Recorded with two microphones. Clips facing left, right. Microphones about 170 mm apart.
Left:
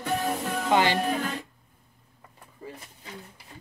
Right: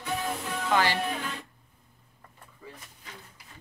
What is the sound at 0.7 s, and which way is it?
Speech, 20° left (ahead or behind).